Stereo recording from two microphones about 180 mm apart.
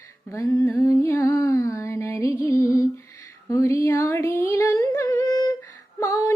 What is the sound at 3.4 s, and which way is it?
Humming, 15° left (ahead or behind).